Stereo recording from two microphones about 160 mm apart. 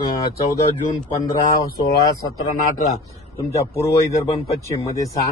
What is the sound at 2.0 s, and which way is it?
Speech, 20° left (ahead or behind).